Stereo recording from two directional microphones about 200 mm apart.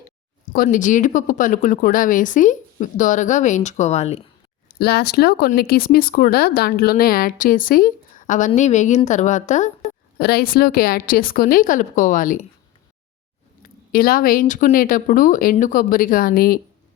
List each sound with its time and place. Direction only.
0.5 s speech: 45° left (ahead or behind)
4.7 s speech: 50° left (ahead or behind)
10.2 s speech: 50° left (ahead or behind)
13.6 s speech: 45° left (ahead or behind)